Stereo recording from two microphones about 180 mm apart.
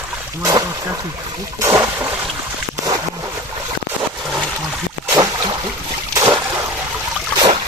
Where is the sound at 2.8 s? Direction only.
20° right (ahead or behind).